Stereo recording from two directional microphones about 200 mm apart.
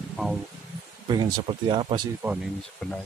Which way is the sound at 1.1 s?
20° right (ahead or behind).